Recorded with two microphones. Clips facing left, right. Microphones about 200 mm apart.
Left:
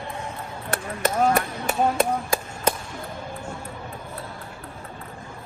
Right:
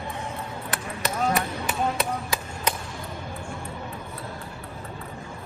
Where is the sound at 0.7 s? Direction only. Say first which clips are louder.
Left 6 dB; 50° left (ahead or behind).